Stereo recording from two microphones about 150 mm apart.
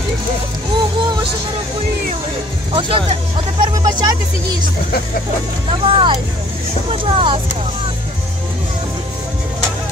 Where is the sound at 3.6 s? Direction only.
25° right (ahead or behind).